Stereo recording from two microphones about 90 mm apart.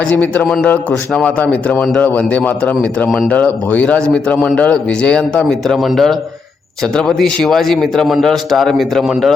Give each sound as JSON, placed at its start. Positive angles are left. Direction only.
{"t": 0.4, "sound": "a man's voice", "side_deg": 0}
{"t": 0.7, "sound": "a man's voice", "side_deg": 15}